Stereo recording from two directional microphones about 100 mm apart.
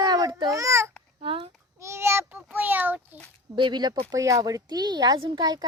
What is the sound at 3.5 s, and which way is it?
Speech, 50° right (ahead or behind).